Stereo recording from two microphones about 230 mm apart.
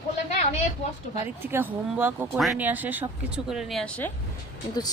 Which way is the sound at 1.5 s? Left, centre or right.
Centre.